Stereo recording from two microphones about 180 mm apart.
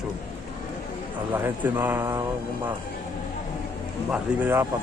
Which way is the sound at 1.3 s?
10° right (ahead or behind).